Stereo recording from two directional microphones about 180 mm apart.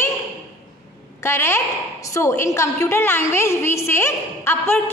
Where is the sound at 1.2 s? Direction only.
15° left (ahead or behind).